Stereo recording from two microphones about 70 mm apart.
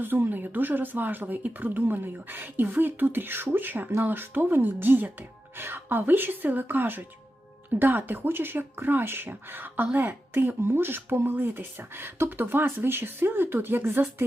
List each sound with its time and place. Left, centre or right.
0.0 s speech: right